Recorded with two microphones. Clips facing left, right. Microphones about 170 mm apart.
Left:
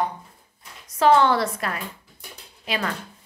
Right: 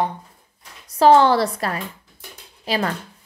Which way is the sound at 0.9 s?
35° right (ahead or behind).